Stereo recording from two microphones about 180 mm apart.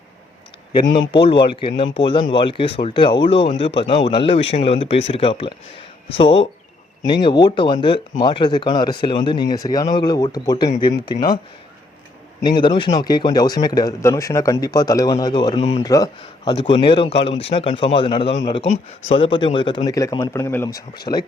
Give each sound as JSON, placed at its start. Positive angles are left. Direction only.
{"t": 0.9, "sound": "speech", "side_deg": 30}
{"t": 12.4, "sound": "speech", "side_deg": 25}